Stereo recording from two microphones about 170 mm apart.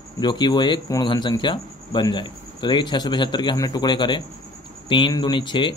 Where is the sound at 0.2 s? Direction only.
25° left (ahead or behind).